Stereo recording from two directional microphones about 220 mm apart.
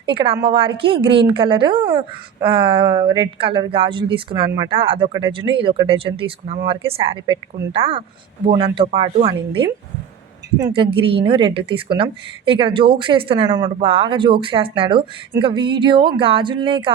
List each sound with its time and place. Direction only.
0.0 s a woman's voice: 20° right (ahead or behind)